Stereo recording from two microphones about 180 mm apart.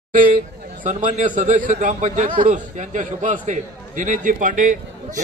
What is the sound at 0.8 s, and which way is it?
A man's voice, 45° right (ahead or behind).